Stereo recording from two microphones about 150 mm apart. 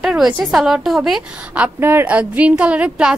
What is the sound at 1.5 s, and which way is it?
A woman's voice, 15° right (ahead or behind).